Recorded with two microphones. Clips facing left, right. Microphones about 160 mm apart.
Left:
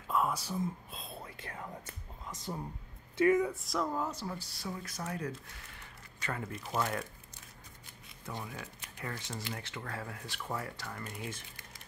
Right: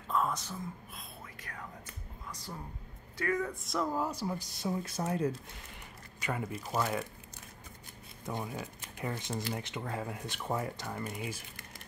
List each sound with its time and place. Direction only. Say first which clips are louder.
0.1 s whispering: even; 10° left (ahead or behind)
0.9 s whispering: left 3 dB; 30° left (ahead or behind)
3.2 s speech: left 6 dB; 20° left (ahead or behind)
3.4 s speech: even; centre (ahead or behind); by 5.4 s 30° right (ahead or behind)
6.2 s speech: right 3 dB; 10° right (ahead or behind)
8.3 s speech: right 4 dB; 20° right (ahead or behind)
11.1 s speech: right 3 dB; 10° right (ahead or behind)